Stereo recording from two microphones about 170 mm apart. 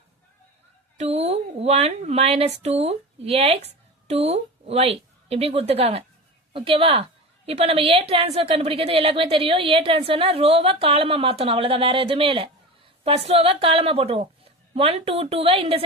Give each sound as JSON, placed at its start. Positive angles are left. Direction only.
{"t": 0.9, "sound": "a woman's voice", "side_deg": -40}